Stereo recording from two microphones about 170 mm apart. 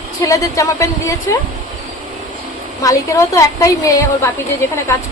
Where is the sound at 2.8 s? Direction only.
20° left (ahead or behind).